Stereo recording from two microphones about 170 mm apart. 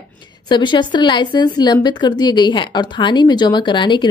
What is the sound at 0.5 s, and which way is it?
A woman's voice, 25° left (ahead or behind).